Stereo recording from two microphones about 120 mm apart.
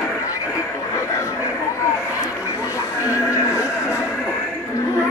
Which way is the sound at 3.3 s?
20° left (ahead or behind).